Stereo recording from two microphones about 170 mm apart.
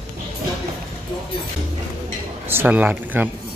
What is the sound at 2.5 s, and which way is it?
Speech, 10° right (ahead or behind).